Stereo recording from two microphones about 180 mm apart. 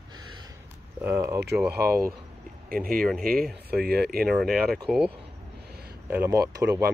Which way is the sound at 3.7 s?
60° right (ahead or behind).